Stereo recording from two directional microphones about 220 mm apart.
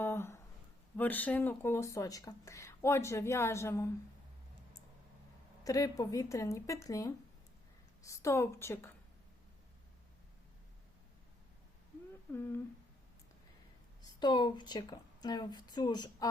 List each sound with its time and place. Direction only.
0.0 s a sound: 10° left (ahead or behind)
0.9 s speech: 5° left (ahead or behind)
5.6 s speech: 15° left (ahead or behind)
12.3 s speech: 10° left (ahead or behind)
14.0 s a woman's voice: 20° left (ahead or behind)